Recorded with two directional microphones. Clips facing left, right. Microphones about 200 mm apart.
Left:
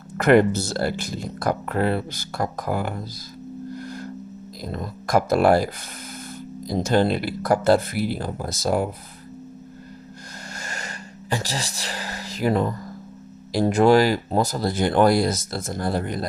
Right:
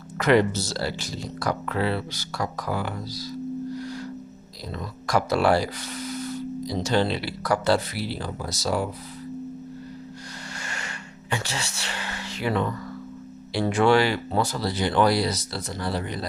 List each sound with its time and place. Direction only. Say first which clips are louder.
0.2 s speech: left 4 dB; 55° left (ahead or behind)
3.7 s music: right 1 dB; 50° left (ahead or behind)
4.7 s speech: left 3 dB; 50° left (ahead or behind)
10.6 s a sound: left 1 dB; 40° left (ahead or behind)
13.5 s speech: left 4 dB; 40° left (ahead or behind)